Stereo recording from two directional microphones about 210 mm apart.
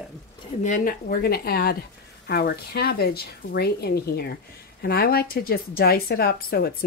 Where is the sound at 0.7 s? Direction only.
40° left (ahead or behind).